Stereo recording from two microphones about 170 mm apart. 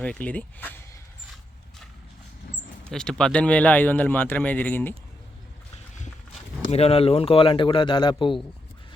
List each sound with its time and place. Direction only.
0.0 s speech: 10° left (ahead or behind)
2.9 s speech: 5° left (ahead or behind)
6.7 s speech: 35° left (ahead or behind)